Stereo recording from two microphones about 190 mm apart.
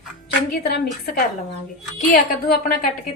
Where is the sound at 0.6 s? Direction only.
55° left (ahead or behind).